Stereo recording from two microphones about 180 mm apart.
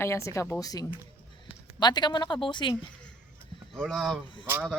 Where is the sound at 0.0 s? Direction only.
15° left (ahead or behind).